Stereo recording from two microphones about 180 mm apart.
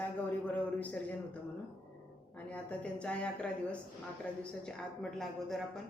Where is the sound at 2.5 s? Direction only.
5° left (ahead or behind).